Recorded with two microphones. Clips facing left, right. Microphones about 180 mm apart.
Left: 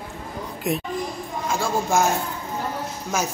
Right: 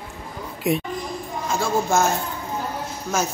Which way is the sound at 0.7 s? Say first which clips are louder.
Right 3 dB; centre (ahead or behind).